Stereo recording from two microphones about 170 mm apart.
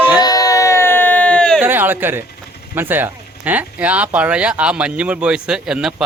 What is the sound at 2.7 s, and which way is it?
Speech, 10° right (ahead or behind).